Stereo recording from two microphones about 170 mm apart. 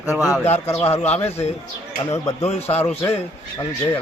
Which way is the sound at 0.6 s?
15° left (ahead or behind).